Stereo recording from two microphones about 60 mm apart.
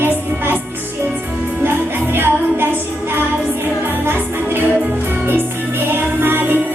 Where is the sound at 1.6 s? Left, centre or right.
Right.